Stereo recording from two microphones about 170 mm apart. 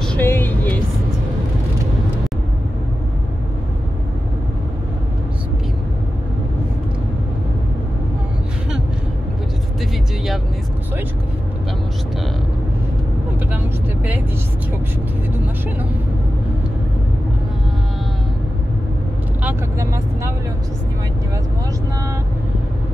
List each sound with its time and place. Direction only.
0.0 s vehicle: 10° left (ahead or behind)